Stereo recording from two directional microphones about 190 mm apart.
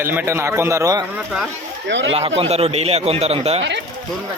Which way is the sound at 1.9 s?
70° right (ahead or behind).